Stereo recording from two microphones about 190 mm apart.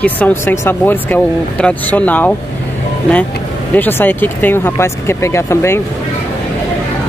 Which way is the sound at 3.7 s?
10° left (ahead or behind).